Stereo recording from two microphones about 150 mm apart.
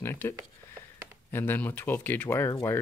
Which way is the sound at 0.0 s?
15° left (ahead or behind).